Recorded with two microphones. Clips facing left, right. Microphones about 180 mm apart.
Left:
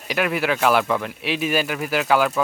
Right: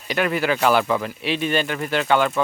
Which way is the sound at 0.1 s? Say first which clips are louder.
Right 1 dB; centre (ahead or behind).